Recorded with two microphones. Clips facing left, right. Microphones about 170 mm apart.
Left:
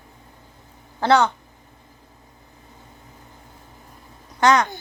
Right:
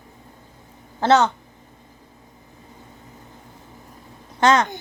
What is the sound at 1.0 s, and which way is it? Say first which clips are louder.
Speech: right 1 dB; 20° right (ahead or behind).